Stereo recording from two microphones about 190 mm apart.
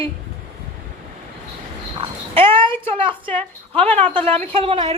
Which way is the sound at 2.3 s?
25° right (ahead or behind).